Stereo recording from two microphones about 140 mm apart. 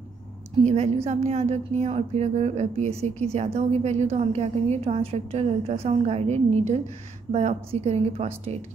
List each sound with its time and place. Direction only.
1.0 s a woman's voice: 50° right (ahead or behind)